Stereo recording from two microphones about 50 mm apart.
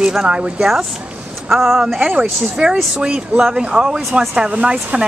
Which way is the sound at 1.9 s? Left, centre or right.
Right.